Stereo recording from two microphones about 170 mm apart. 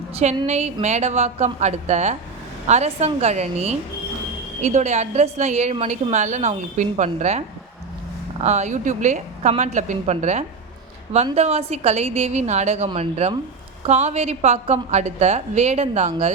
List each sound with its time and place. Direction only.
0.1 s a woman's voice: 40° right (ahead or behind)